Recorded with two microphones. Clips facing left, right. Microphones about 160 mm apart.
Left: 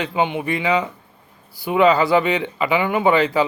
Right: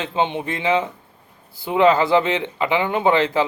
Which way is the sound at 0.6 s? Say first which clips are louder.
Right 3 dB; 20° right (ahead or behind).